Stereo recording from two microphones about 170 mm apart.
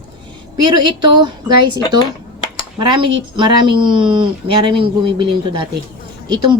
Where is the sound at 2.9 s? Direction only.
30° right (ahead or behind).